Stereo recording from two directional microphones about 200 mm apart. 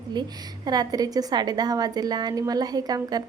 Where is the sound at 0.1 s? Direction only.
20° right (ahead or behind).